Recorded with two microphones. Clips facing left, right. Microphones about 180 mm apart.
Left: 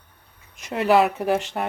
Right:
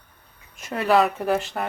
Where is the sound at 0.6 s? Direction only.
15° left (ahead or behind).